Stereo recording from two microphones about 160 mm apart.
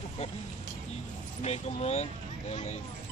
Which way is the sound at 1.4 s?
40° left (ahead or behind).